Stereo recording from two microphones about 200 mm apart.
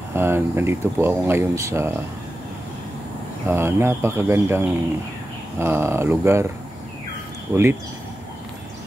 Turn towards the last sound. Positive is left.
turn(degrees=-10)  # may be behind; listen again after turning